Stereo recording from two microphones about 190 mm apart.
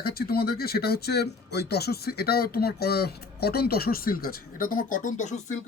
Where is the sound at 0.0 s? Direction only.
55° left (ahead or behind); by 5.5 s 40° left (ahead or behind).